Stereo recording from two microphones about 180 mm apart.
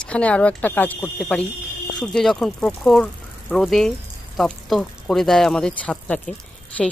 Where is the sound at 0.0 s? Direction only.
5° left (ahead or behind).